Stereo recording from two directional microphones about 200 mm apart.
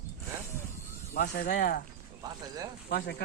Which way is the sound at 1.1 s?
45° left (ahead or behind).